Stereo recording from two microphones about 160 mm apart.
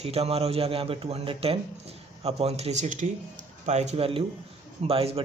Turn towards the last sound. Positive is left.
turn(degrees=-35)  # may be behind; listen again after turning